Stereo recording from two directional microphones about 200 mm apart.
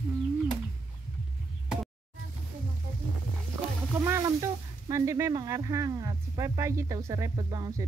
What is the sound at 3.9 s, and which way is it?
Speech, 15° right (ahead or behind).